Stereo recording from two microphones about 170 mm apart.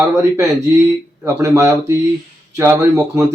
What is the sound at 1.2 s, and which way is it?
Speech, 20° right (ahead or behind).